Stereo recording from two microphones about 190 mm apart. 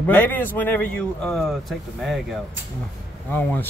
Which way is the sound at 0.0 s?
10° left (ahead or behind).